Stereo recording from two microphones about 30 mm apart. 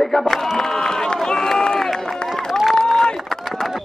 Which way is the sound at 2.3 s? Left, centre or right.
Centre.